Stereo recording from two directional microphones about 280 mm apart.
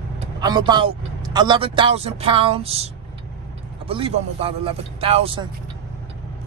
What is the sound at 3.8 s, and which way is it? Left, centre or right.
Speech, centre.